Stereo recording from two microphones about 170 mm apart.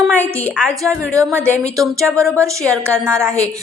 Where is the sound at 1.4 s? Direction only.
5° left (ahead or behind).